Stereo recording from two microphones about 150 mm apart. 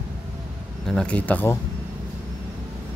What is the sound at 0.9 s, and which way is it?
Speech, 5° left (ahead or behind).